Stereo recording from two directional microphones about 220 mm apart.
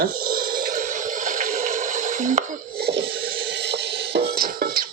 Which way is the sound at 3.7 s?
45° right (ahead or behind).